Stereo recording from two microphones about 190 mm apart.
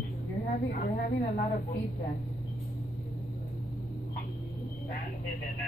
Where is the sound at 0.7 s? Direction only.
45° left (ahead or behind).